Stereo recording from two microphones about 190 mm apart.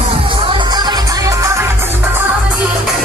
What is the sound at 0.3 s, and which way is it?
Music, 25° right (ahead or behind).